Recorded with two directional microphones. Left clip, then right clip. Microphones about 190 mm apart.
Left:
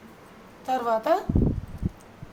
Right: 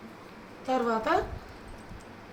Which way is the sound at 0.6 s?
50° left (ahead or behind).